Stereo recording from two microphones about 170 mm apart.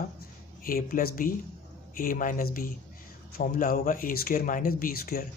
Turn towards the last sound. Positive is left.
turn(degrees=60)  # may be behind; listen again after turning